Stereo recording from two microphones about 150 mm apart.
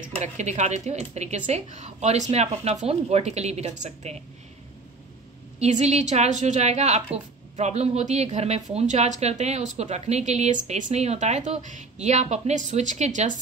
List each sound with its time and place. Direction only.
0.2 s speech: 50° right (ahead or behind)
5.6 s speech: 50° right (ahead or behind)